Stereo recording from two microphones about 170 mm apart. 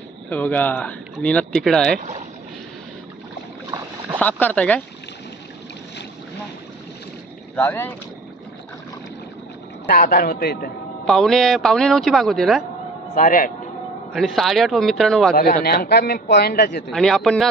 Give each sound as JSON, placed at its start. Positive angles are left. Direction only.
{"t": 0.3, "sound": "speech", "side_deg": 10}
{"t": 2.0, "sound": "speech", "side_deg": -45}
{"t": 4.2, "sound": "speech", "side_deg": 10}
{"t": 7.5, "sound": "speech", "side_deg": 10}
{"t": 9.8, "sound": "a man's voice", "side_deg": 55}
{"t": 11.1, "sound": "a man's voice", "side_deg": 0}
{"t": 13.1, "sound": "a man's voice", "side_deg": 50}
{"t": 14.1, "sound": "a man's voice", "side_deg": 0}
{"t": 15.3, "sound": "speech", "side_deg": 60}
{"t": 16.9, "sound": "a man's voice", "side_deg": 0}